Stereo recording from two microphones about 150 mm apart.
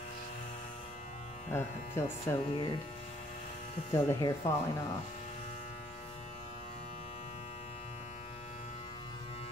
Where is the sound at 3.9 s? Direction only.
25° left (ahead or behind).